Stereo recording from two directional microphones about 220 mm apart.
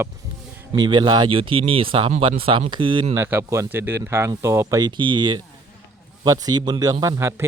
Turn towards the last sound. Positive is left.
turn(degrees=-10)  # may be behind; listen again after turning